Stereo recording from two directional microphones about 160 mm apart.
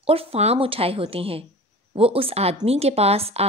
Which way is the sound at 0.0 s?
35° right (ahead or behind).